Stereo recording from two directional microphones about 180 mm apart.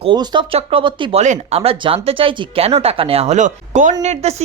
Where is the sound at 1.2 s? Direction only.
40° right (ahead or behind).